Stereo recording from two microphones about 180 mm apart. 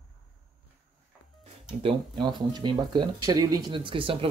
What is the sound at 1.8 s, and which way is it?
Speech, 30° right (ahead or behind).